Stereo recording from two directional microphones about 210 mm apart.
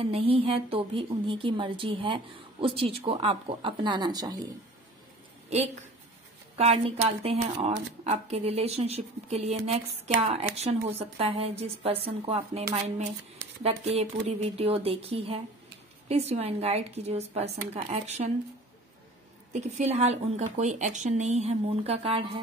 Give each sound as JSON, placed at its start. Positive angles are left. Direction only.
{"t": 0.0, "sound": "a woman's voice", "side_deg": -25}
{"t": 6.5, "sound": "a woman's voice", "side_deg": -30}
{"t": 13.9, "sound": "a woman's voice", "side_deg": -30}
{"t": 19.5, "sound": "speech", "side_deg": -30}